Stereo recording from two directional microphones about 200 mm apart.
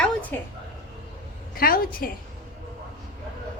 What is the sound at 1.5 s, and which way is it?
Speech, 45° left (ahead or behind).